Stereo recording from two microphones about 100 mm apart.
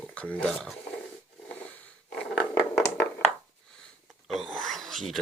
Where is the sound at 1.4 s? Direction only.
15° left (ahead or behind).